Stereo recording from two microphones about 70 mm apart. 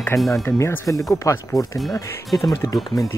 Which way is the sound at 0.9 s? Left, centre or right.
Left.